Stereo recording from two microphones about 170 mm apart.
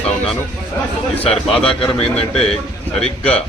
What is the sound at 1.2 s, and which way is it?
Speech, 5° left (ahead or behind).